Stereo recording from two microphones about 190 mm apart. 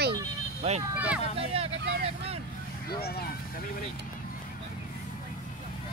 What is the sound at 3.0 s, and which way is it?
Speech, 55° left (ahead or behind).